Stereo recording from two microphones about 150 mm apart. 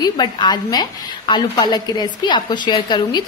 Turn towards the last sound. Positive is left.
turn(degrees=30)  # may be behind; listen again after turning